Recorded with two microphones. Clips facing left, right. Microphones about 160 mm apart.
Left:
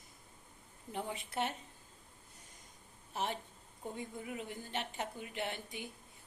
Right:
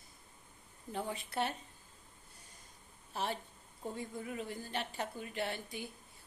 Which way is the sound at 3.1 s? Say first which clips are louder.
Even; 20° left (ahead or behind).